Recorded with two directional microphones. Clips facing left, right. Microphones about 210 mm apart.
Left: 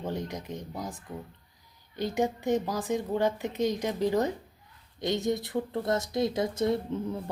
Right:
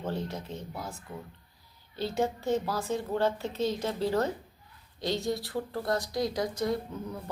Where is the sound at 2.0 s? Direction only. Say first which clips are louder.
Left 1 dB; 15° left (ahead or behind).